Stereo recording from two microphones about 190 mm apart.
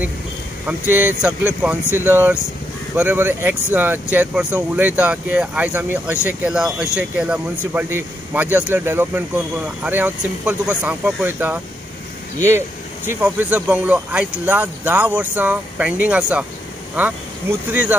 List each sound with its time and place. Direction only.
0.9 s speech: 10° right (ahead or behind)